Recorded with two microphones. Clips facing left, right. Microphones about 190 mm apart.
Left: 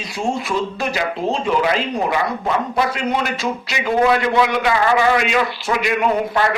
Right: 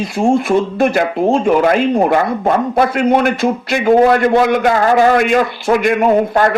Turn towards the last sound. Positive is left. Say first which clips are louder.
# right 6 dB
turn(degrees=-50)  # may be behind; listen again after turning